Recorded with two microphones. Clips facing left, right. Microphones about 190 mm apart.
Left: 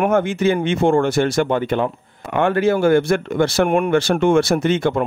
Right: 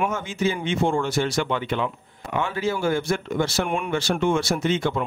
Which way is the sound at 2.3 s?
60° left (ahead or behind).